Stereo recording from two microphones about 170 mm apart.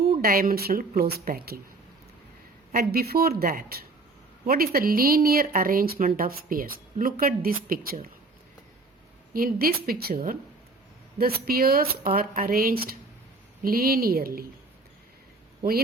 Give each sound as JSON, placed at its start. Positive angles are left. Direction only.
{"t": 0.2, "sound": "a woman's voice", "side_deg": -60}
{"t": 2.7, "sound": "a woman's voice", "side_deg": -65}
{"t": 9.3, "sound": "a woman's voice", "side_deg": -60}